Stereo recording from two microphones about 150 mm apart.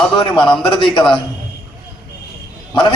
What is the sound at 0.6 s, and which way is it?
Speech, 35° left (ahead or behind).